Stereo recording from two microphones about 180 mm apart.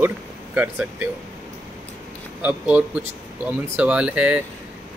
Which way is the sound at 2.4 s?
5° right (ahead or behind).